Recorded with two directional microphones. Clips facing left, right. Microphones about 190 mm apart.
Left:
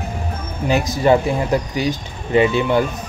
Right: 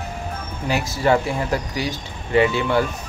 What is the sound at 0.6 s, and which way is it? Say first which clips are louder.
Speech: left 4 dB; 20° left (ahead or behind).